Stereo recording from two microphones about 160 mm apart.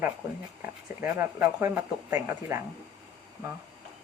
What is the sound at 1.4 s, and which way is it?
Speech, 10° right (ahead or behind).